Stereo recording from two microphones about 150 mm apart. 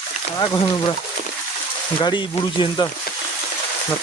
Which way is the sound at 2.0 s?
30° left (ahead or behind).